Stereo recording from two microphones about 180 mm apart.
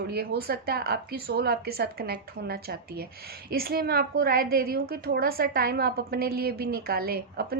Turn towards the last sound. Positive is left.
turn(degrees=-60)  # may be behind; listen again after turning